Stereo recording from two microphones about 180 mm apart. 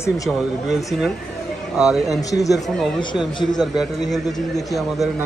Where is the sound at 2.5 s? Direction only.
Centre (ahead or behind).